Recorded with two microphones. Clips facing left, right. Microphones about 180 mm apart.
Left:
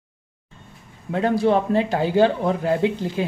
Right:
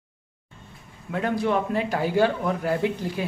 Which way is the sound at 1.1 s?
30° left (ahead or behind).